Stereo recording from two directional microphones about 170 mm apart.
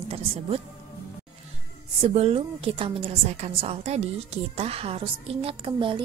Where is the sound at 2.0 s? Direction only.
40° right (ahead or behind).